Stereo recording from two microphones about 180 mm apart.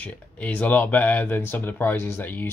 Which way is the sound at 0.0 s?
10° left (ahead or behind).